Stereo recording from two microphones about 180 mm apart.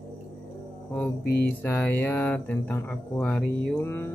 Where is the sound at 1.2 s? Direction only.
60° left (ahead or behind).